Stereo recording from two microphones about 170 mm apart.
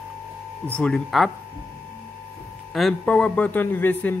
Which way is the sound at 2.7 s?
5° left (ahead or behind).